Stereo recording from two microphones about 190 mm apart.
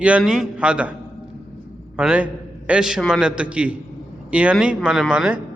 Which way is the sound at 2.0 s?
5° right (ahead or behind).